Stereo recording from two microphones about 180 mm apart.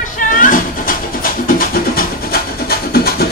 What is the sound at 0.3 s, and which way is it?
Cat, 50° left (ahead or behind).